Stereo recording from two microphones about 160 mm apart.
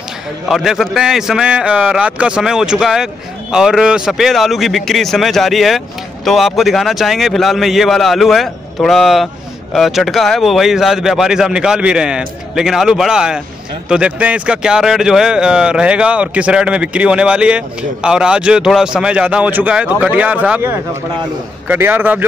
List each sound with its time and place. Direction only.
0.5 s speech: centre (ahead or behind)